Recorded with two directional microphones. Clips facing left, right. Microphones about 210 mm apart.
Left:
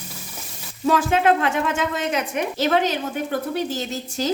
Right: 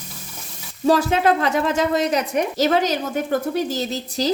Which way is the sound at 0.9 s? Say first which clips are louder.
Right 1 dB; 40° right (ahead or behind).